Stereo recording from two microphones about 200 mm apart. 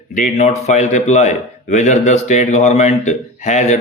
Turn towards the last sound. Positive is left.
turn(degrees=35)  # may be behind; listen again after turning